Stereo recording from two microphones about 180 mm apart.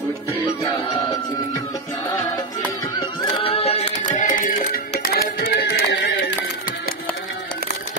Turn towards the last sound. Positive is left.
turn(degrees=75)  # may be behind; listen again after turning